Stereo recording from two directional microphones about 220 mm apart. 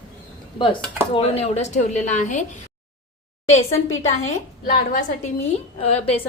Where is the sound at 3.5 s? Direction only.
30° left (ahead or behind).